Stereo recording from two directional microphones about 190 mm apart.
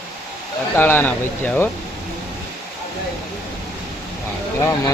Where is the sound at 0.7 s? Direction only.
10° left (ahead or behind).